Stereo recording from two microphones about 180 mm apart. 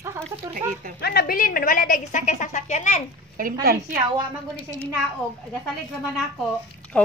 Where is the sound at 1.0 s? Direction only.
60° left (ahead or behind); by 3.0 s 40° left (ahead or behind).